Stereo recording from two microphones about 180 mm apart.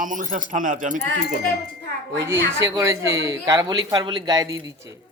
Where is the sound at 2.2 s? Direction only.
15° right (ahead or behind).